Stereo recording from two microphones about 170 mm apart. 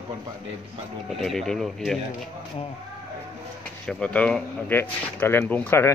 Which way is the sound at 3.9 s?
5° left (ahead or behind).